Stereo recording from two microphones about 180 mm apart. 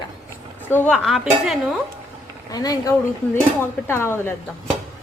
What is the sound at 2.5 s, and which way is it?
A woman's voice, 20° left (ahead or behind).